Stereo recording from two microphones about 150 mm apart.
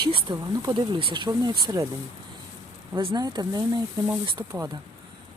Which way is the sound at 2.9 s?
30° right (ahead or behind).